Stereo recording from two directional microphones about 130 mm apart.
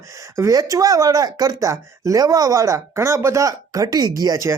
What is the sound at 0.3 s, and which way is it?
Speech, 25° right (ahead or behind).